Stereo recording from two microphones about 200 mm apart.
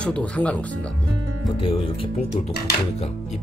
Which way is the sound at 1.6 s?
25° left (ahead or behind).